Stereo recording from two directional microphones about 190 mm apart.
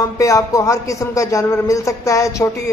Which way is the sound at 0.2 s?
15° left (ahead or behind).